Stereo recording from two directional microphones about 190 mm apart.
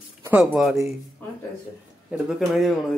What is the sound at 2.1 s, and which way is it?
Speech, centre (ahead or behind).